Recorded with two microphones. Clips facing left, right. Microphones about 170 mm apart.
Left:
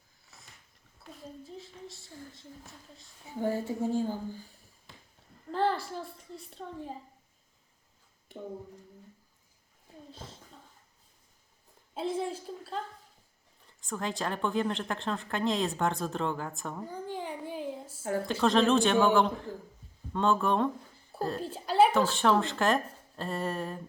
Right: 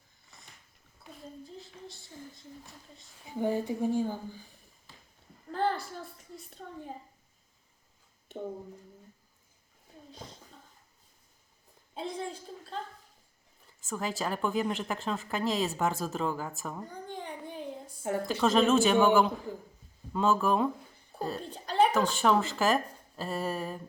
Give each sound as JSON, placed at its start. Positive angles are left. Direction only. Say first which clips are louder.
{"t": 0.3, "sound": "a sound", "louder": "even", "side_deg": 0}
{"t": 1.1, "sound": "speech", "louder": "left 1 dB", "side_deg": 0}
{"t": 3.2, "sound": "speech", "louder": "right 1 dB", "side_deg": -15}
{"t": 5.5, "sound": "speech", "louder": "left 2 dB", "side_deg": 0}
{"t": 11.9, "sound": "speech", "louder": "left 4 dB", "side_deg": 5}
{"t": 13.8, "sound": "speech", "louder": "even", "side_deg": -5}